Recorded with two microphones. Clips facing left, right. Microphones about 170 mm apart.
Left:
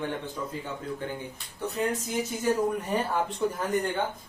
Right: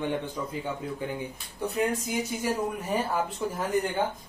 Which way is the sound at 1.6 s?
10° right (ahead or behind).